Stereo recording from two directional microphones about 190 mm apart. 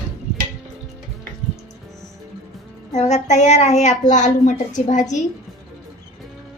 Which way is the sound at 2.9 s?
35° left (ahead or behind).